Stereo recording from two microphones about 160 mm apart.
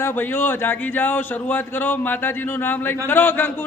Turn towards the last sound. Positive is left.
turn(degrees=10)  # may be behind; listen again after turning